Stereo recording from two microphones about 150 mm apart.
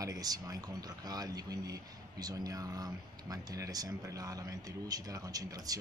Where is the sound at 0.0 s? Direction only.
25° right (ahead or behind).